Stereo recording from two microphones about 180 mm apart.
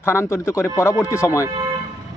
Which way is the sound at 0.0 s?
15° left (ahead or behind).